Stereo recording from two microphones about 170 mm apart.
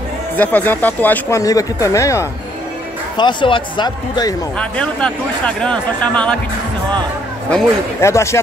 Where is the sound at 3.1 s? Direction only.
30° left (ahead or behind).